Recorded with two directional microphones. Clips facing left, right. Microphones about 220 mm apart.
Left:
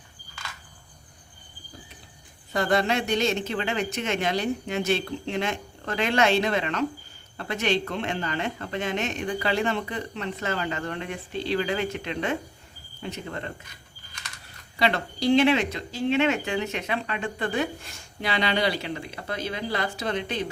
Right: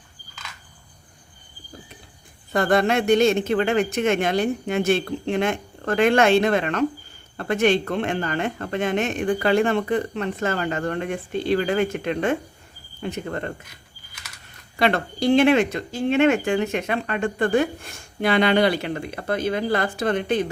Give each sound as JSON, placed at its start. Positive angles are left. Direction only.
{"t": 2.5, "sound": "speech", "side_deg": -55}
{"t": 14.1, "sound": "a sound", "side_deg": -5}
{"t": 14.8, "sound": "speech", "side_deg": -55}